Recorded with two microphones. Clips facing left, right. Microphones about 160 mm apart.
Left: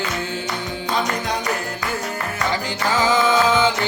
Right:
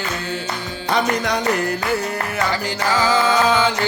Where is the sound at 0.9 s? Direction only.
75° right (ahead or behind).